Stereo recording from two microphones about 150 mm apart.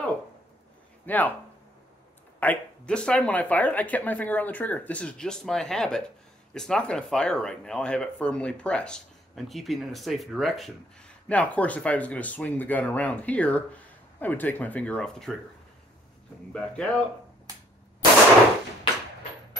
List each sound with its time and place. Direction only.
1.0 s speech: 10° left (ahead or behind)
2.4 s speech: 10° left (ahead or behind)
16.5 s speech: 5° left (ahead or behind)
17.5 s a sound: 20° right (ahead or behind)